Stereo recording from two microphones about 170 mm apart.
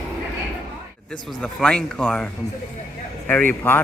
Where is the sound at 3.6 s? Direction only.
10° left (ahead or behind).